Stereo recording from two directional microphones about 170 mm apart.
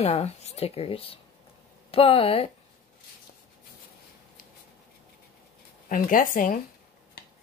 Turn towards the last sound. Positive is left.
turn(degrees=50)  # may be behind; listen again after turning